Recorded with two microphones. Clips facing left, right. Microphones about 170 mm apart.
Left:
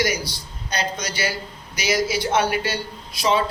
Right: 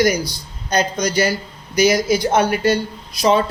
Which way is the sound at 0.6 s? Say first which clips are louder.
Right 8 dB; 45° right (ahead or behind).